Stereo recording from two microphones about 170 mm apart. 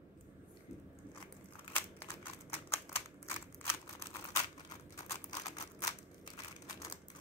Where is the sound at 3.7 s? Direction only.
15° left (ahead or behind).